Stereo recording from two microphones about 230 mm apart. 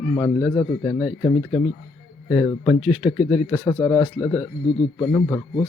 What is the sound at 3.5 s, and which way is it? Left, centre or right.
Speech, centre.